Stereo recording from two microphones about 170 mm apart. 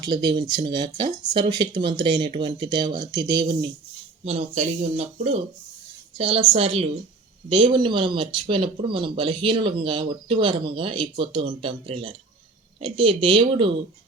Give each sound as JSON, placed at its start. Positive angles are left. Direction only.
{"t": 0.0, "sound": "speech", "side_deg": -25}
{"t": 4.3, "sound": "speech", "side_deg": -35}